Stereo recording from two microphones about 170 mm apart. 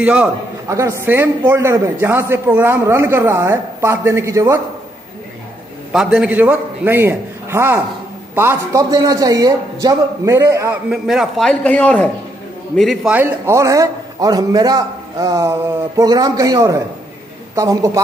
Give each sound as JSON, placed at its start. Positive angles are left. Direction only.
{"t": 0.0, "sound": "a man's voice", "side_deg": -5}
{"t": 5.9, "sound": "a man's voice", "side_deg": -5}
{"t": 10.9, "sound": "a man's voice", "side_deg": 0}